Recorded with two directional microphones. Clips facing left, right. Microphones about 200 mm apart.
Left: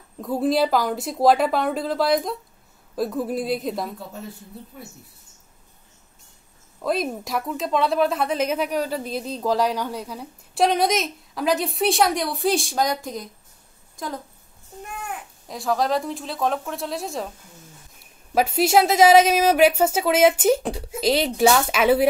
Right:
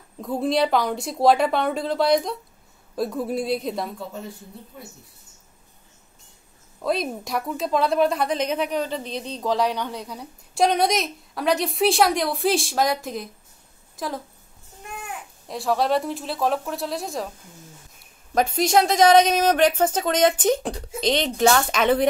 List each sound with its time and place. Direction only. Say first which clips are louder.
0.2 s a woman's voice: left 1 dB; centre (ahead or behind)
6.8 s a woman's voice: left 1 dB; centre (ahead or behind)
15.4 s a woman's voice: right 1 dB; centre (ahead or behind)
18.3 s a woman's voice: left 1 dB; 5° left (ahead or behind)